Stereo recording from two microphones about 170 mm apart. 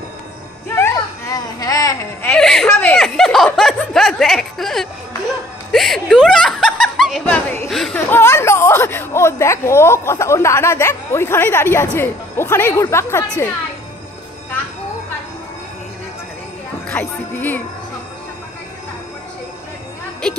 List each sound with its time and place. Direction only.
0.7 s children playing: 15° left (ahead or behind)
2.2 s speech: 5° left (ahead or behind)
8.1 s speech: 15° left (ahead or behind)
16.9 s speech: 10° left (ahead or behind)